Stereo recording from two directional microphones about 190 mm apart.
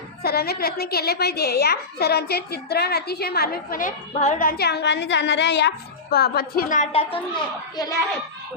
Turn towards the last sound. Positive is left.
turn(degrees=20)  # may be behind; listen again after turning